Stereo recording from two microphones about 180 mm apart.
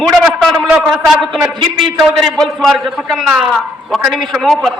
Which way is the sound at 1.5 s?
25° right (ahead or behind).